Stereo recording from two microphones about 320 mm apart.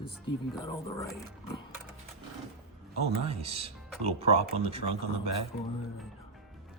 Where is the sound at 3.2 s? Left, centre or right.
Centre.